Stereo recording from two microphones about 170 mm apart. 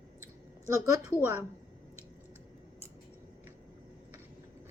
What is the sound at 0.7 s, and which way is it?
Speech, 20° right (ahead or behind).